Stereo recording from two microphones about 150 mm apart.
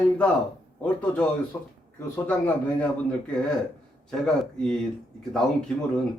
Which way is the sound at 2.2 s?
10° left (ahead or behind).